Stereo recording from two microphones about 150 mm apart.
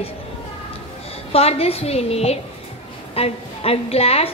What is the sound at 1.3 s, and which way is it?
A woman's voice, 40° left (ahead or behind).